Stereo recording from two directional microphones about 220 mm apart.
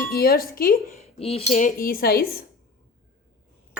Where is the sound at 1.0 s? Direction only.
25° left (ahead or behind); by 2.4 s 45° left (ahead or behind).